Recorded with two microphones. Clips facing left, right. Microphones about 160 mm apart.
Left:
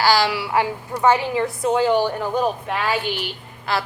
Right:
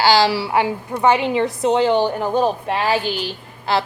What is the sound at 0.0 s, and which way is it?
A woman's voice, 25° right (ahead or behind).